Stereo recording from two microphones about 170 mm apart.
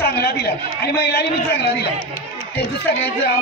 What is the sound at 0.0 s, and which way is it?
A woman's voice, 70° left (ahead or behind).